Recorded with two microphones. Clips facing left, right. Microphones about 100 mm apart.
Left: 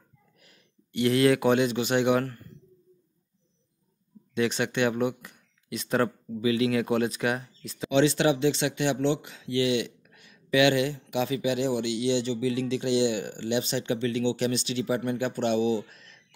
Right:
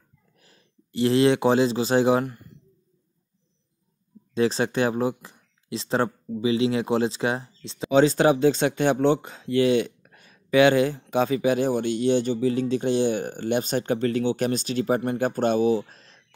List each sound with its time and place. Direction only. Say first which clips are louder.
0.4 s speech: right 3 dB; 30° right (ahead or behind)
2.2 s a sound: right 3 dB; 10° right (ahead or behind)
4.3 s speech: right 4 dB; 35° right (ahead or behind)
7.9 s speech: right 4 dB; 40° right (ahead or behind)